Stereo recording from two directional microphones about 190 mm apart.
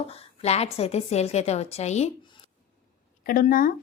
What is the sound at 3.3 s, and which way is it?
Speech, 50° left (ahead or behind).